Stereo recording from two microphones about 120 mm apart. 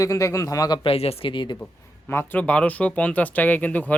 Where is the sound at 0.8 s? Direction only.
55° left (ahead or behind).